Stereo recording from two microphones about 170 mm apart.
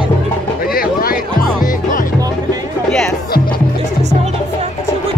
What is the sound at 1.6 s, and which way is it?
Music, 55° left (ahead or behind).